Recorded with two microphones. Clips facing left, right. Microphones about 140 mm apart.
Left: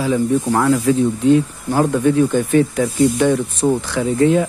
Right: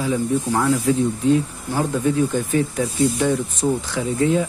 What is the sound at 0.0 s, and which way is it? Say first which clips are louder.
Speech: left 4 dB; 80° left.